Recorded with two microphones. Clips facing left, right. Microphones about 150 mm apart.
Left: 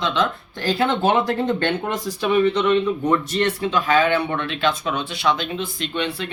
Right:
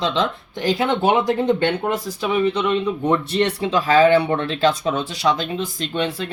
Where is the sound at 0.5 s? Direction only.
15° right (ahead or behind).